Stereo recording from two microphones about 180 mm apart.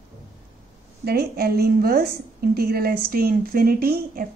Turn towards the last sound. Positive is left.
turn(degrees=-60)  # may be behind; listen again after turning